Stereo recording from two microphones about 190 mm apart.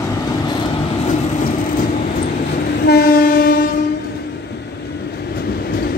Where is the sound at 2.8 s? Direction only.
55° left (ahead or behind).